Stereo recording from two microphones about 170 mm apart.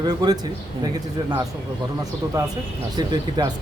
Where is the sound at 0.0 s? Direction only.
25° right (ahead or behind).